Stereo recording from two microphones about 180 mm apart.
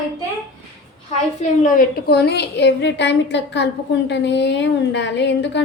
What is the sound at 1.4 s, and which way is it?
A woman's voice, 50° left (ahead or behind).